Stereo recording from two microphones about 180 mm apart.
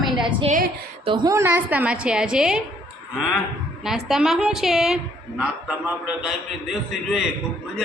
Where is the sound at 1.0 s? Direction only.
25° right (ahead or behind); by 2.6 s 5° right (ahead or behind).